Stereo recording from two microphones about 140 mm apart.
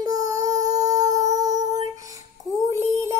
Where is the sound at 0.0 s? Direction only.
25° right (ahead or behind).